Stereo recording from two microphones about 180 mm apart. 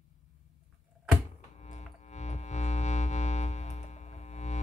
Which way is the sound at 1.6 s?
40° left (ahead or behind).